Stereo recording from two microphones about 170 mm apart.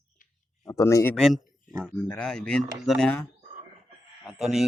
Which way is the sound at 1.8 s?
5° left (ahead or behind).